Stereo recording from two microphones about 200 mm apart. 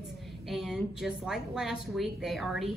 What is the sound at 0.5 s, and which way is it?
Speech, centre (ahead or behind).